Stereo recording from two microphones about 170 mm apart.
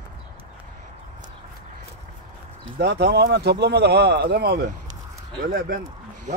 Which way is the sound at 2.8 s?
75° right (ahead or behind).